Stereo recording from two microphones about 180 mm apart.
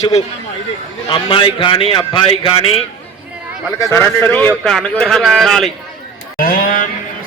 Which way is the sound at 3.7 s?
20° left (ahead or behind).